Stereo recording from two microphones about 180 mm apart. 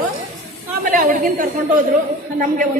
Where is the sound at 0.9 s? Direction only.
50° right (ahead or behind).